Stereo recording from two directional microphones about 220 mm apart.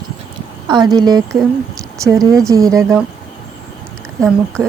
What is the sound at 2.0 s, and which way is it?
Speech, 15° right (ahead or behind).